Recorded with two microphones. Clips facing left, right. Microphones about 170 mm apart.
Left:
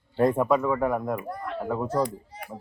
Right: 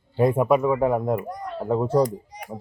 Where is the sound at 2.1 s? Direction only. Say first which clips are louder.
Right 4 dB; 15° right (ahead or behind).